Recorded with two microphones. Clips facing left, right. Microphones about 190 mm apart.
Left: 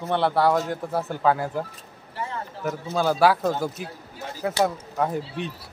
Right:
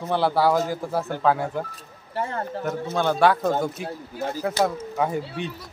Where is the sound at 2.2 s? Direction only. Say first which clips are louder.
Right 4 dB; 50° right (ahead or behind).